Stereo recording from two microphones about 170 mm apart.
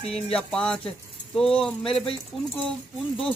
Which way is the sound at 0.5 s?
5° left (ahead or behind).